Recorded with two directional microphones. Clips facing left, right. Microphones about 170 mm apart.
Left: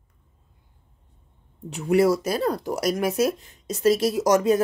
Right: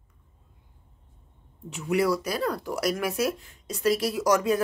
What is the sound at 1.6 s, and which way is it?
Speech, 35° left (ahead or behind).